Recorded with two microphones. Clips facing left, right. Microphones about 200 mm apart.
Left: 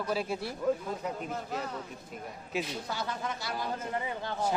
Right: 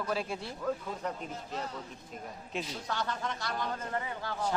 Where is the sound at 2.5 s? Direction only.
5° left (ahead or behind).